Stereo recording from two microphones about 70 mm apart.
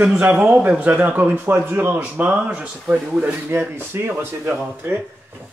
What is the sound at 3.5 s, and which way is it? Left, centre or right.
Speech, right.